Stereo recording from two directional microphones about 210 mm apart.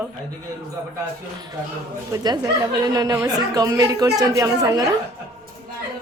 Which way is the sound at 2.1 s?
15° right (ahead or behind).